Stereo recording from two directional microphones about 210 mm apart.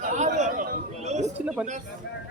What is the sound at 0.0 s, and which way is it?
Chatter, 35° right (ahead or behind).